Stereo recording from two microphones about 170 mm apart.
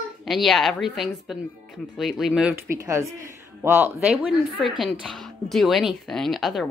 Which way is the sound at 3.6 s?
15° right (ahead or behind).